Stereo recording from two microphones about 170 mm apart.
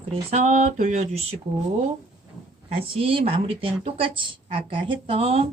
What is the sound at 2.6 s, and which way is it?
Speech, 35° right (ahead or behind).